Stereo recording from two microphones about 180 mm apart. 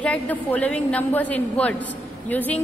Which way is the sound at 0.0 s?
10° left (ahead or behind).